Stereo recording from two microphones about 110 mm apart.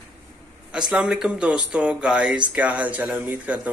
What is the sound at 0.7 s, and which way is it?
Speech, 5° right (ahead or behind).